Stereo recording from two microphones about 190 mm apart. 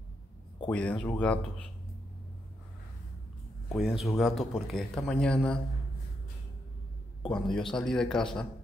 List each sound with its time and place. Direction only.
0.7 s speech: 5° left (ahead or behind)
3.6 s speech: centre (ahead or behind)
7.2 s speech: centre (ahead or behind)